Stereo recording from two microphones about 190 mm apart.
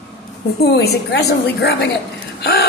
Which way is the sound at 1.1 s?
60° left (ahead or behind).